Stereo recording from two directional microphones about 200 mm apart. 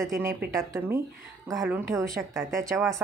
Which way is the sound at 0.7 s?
10° right (ahead or behind).